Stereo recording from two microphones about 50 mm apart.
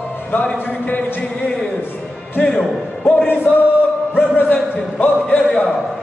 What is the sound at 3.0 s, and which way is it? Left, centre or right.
Music, left.